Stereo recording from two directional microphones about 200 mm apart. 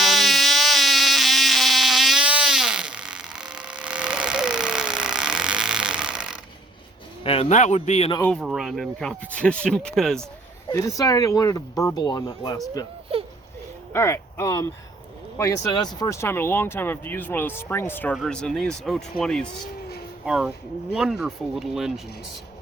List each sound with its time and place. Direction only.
0.0 s insect: centre (ahead or behind)
7.3 s a man's voice: 30° left (ahead or behind)
8.4 s speech: centre (ahead or behind)
10.7 s speech: 15° left (ahead or behind)
13.9 s speech: 15° left (ahead or behind); by 22.0 s centre (ahead or behind)